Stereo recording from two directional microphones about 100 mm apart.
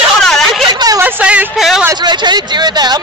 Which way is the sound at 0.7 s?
40° right (ahead or behind).